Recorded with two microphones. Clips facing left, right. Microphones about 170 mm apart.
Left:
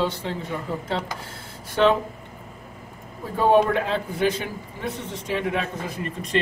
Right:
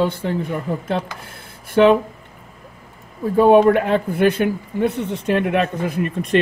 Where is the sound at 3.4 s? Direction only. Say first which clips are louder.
Right 7 dB; 55° right (ahead or behind).